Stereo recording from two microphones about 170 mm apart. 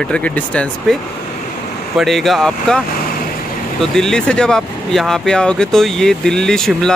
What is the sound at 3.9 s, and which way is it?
Speech, 5° left (ahead or behind).